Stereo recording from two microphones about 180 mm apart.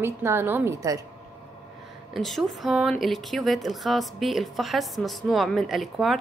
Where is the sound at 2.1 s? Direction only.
Centre (ahead or behind).